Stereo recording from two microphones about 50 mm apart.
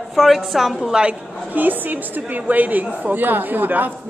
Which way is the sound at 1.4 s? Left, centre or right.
Right.